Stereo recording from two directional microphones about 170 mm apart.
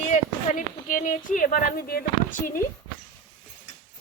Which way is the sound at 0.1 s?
50° left (ahead or behind).